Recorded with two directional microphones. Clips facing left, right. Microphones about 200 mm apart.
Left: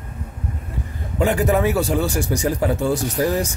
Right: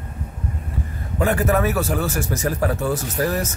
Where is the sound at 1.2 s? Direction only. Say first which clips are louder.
Left 1 dB; 15° left (ahead or behind).